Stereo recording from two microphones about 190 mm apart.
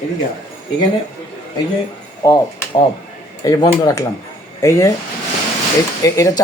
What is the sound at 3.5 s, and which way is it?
Speech, 20° left (ahead or behind).